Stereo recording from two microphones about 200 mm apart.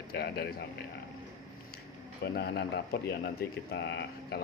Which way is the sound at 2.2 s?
55° left (ahead or behind).